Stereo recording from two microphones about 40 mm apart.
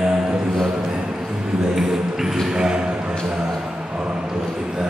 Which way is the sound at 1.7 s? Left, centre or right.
Centre.